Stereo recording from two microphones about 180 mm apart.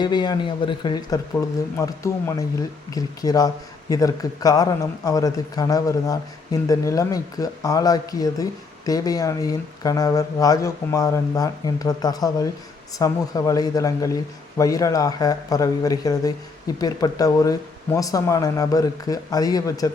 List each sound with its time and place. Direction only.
0.0 s speech: 25° left (ahead or behind)